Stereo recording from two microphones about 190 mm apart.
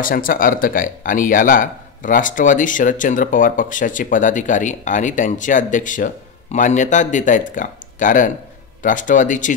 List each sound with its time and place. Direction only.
0.0 s speech: 45° left (ahead or behind)